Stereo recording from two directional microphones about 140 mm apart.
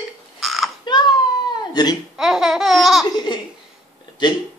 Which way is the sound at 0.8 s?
30° left (ahead or behind).